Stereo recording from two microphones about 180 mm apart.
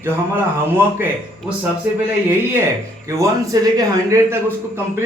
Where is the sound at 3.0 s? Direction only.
15° right (ahead or behind).